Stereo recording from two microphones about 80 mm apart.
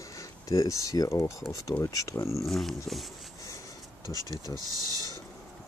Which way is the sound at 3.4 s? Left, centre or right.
Left.